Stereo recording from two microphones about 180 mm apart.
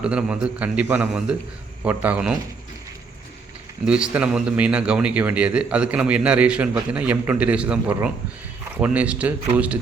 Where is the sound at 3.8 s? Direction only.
5° right (ahead or behind).